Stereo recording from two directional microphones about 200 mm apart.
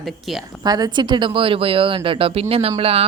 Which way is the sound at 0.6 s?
20° right (ahead or behind).